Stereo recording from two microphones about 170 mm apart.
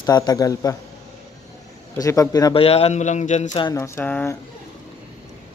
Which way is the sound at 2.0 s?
20° left (ahead or behind).